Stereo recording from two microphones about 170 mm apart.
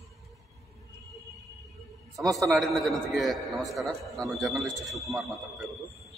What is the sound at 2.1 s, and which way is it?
A man's voice, centre (ahead or behind).